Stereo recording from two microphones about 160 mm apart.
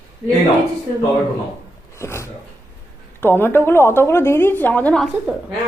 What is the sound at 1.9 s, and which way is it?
A woman's voice, 15° left (ahead or behind).